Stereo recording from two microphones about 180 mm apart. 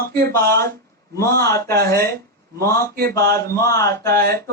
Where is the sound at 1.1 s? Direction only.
15° left (ahead or behind).